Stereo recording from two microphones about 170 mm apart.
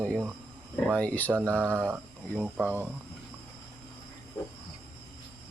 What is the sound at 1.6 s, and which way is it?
Mantra, 10° right (ahead or behind).